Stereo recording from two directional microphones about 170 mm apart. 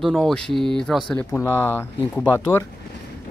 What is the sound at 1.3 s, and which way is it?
Speech, 15° left (ahead or behind).